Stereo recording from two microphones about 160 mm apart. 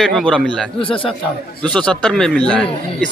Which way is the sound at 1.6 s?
5° left (ahead or behind).